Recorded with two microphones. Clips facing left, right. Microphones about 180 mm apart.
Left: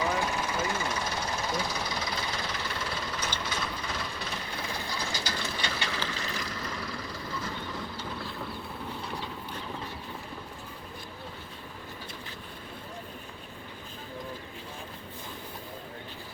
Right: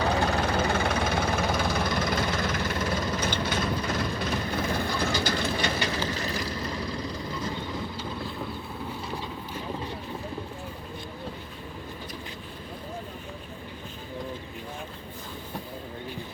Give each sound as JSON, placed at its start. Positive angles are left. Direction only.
{"t": 0.0, "sound": "vehicle", "side_deg": -70}
{"t": 4.7, "sound": "train", "side_deg": -55}
{"t": 6.1, "sound": "vehicle", "side_deg": -35}
{"t": 6.7, "sound": "vehicle", "side_deg": -20}